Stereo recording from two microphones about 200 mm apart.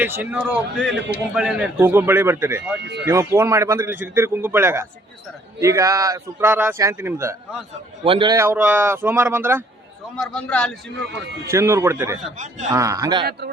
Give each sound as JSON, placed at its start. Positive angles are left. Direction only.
{"t": 0.0, "sound": "a man's voice", "side_deg": -10}
{"t": 2.8, "sound": "speech", "side_deg": -60}
{"t": 3.1, "sound": "a man's voice", "side_deg": -15}
{"t": 8.0, "sound": "a man's voice", "side_deg": -25}
{"t": 10.2, "sound": "a man's voice", "side_deg": 5}
{"t": 11.4, "sound": "a man's voice", "side_deg": -15}